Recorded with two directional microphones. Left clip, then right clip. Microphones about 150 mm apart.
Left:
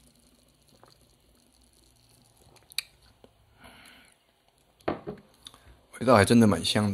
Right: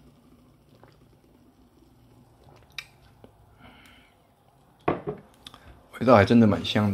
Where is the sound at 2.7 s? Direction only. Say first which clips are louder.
Left 4 dB; 20° left (ahead or behind).